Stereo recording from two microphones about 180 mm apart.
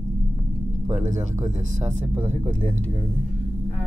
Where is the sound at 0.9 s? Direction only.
40° right (ahead or behind).